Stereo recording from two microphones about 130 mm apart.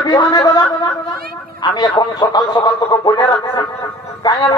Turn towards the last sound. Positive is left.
turn(degrees=35)  # may be behind; listen again after turning